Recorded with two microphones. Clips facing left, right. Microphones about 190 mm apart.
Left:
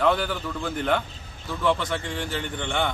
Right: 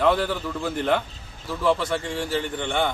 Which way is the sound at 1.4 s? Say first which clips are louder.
Right 2 dB; 5° right (ahead or behind).